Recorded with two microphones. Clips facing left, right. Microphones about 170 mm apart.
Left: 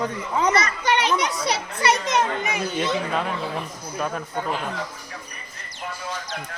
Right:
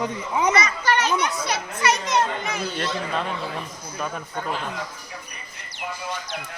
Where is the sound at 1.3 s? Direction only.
30° left (ahead or behind); by 2.7 s 15° left (ahead or behind).